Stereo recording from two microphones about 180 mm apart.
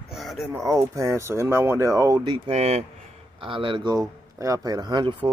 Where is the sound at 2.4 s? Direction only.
35° right (ahead or behind).